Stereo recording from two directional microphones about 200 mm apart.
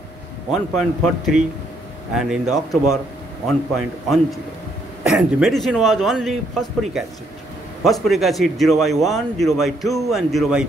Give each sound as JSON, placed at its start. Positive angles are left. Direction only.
{"t": 0.5, "sound": "a man's voice", "side_deg": 0}